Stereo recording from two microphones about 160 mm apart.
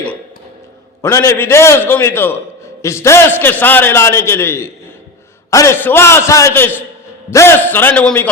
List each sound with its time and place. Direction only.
1.0 s a man's voice: 15° left (ahead or behind)